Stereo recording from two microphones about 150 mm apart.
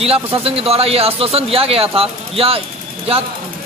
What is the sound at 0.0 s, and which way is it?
Speech, 40° right (ahead or behind).